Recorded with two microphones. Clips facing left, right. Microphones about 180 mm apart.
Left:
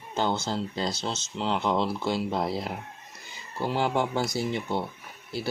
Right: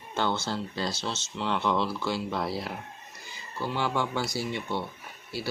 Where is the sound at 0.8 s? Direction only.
20° left (ahead or behind).